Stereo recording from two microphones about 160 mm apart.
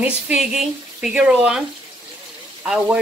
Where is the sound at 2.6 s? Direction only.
5° right (ahead or behind).